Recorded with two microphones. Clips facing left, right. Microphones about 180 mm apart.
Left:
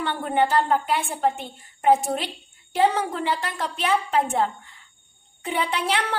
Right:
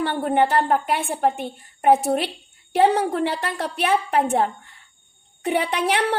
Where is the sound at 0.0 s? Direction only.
40° right (ahead or behind).